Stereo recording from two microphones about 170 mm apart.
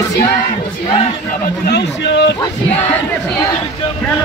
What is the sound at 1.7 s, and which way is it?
Speech, 80° left.